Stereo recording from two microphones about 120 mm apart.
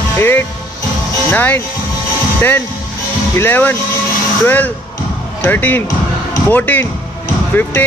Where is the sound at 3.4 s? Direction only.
15° left (ahead or behind).